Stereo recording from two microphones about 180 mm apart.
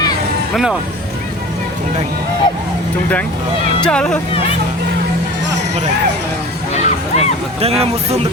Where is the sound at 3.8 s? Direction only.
5° left (ahead or behind).